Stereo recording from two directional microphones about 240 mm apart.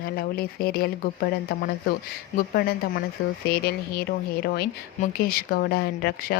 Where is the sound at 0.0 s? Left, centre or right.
Left.